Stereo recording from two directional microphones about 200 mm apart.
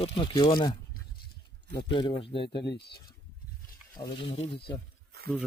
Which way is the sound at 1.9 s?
25° left (ahead or behind).